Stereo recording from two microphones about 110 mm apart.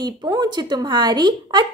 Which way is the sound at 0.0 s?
40° right (ahead or behind).